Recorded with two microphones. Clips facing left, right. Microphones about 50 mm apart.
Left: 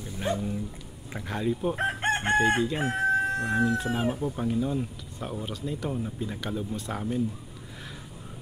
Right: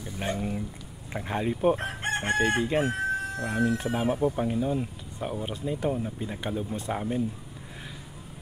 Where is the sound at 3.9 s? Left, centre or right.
Right.